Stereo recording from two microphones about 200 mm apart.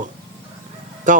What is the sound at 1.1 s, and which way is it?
Speech, 40° right (ahead or behind).